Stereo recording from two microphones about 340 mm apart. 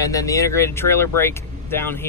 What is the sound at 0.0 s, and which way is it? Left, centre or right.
Speech, centre.